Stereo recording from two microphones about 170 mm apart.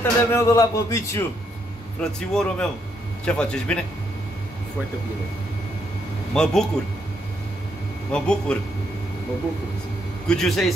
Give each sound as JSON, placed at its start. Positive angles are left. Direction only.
{"t": 0.0, "sound": "speech", "side_deg": 15}
{"t": 2.0, "sound": "speech", "side_deg": 5}
{"t": 6.3, "sound": "speech", "side_deg": 5}
{"t": 8.1, "sound": "speech", "side_deg": 5}
{"t": 10.2, "sound": "speech", "side_deg": 5}